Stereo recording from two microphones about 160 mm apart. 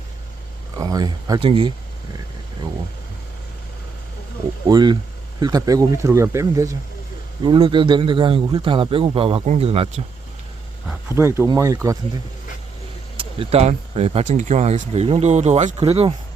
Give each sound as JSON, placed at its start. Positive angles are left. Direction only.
{"t": 0.8, "sound": "speech", "side_deg": -25}
{"t": 4.7, "sound": "speech", "side_deg": -25}
{"t": 7.4, "sound": "speech", "side_deg": -30}
{"t": 11.1, "sound": "speech", "side_deg": -15}
{"t": 13.1, "sound": "speech", "side_deg": -35}